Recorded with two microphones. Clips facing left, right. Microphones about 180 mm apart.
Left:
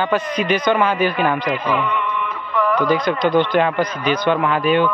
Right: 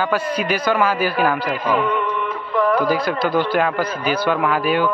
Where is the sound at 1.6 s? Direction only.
45° right (ahead or behind).